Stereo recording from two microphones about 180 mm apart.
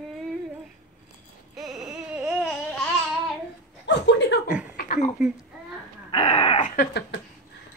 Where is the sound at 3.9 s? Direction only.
70° left (ahead or behind).